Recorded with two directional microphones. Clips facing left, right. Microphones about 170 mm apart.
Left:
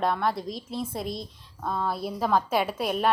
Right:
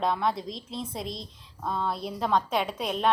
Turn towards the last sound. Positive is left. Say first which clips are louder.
# left 2 dB
turn(degrees=5)  # may be behind; listen again after turning